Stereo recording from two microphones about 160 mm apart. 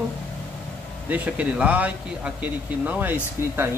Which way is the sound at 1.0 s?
10° right (ahead or behind).